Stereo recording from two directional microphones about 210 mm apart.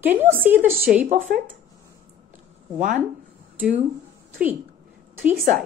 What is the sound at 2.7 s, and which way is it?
Speech, 35° right (ahead or behind).